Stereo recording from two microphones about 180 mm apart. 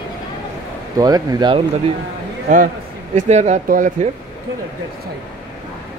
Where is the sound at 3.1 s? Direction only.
40° right (ahead or behind).